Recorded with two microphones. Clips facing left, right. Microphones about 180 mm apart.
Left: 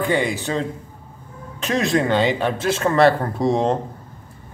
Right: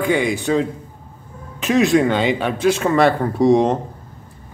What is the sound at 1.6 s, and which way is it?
Speech, centre (ahead or behind).